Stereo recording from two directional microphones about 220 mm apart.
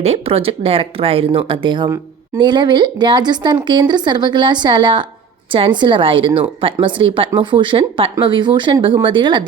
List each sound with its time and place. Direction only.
0.0 s speech: 25° right (ahead or behind)